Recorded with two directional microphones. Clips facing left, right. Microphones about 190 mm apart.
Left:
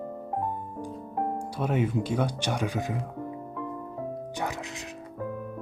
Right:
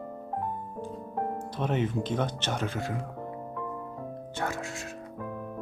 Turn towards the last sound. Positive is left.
turn(degrees=20)  # may be behind; listen again after turning